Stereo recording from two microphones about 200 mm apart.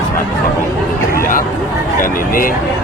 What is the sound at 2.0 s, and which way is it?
Speech, 45° left (ahead or behind).